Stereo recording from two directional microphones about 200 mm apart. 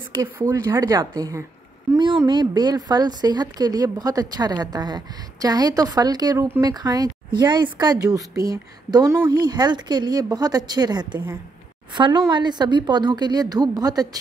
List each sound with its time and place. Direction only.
0.2 s a woman's voice: 15° right (ahead or behind)